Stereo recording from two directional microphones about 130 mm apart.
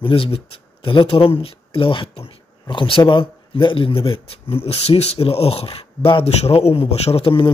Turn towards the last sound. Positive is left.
turn(degrees=40)  # may be behind; listen again after turning